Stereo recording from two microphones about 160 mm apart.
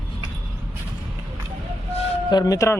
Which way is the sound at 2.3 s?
25° left (ahead or behind).